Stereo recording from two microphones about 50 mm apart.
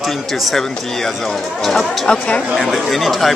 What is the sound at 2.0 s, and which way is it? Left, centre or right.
Speech, left.